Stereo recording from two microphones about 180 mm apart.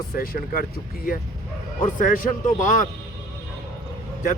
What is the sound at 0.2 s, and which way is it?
Speech, 55° left (ahead or behind).